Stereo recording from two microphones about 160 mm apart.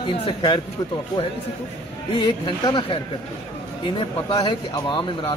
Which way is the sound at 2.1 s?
30° left (ahead or behind).